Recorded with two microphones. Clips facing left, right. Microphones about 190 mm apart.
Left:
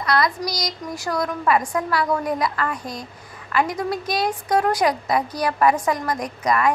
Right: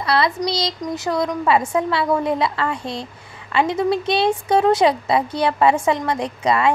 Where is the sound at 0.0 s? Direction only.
30° right (ahead or behind).